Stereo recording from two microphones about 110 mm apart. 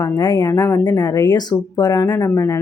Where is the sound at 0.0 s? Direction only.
40° left (ahead or behind).